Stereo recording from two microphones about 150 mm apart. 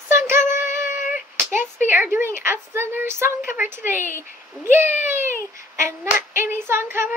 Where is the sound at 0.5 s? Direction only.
15° right (ahead or behind).